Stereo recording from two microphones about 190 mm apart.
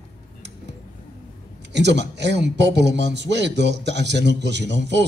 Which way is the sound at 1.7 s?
65° right (ahead or behind).